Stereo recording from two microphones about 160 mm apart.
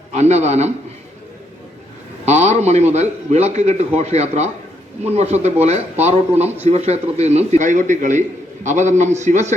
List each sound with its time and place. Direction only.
0.1 s a man's voice: 45° right (ahead or behind)
2.2 s a man's voice: 45° right (ahead or behind)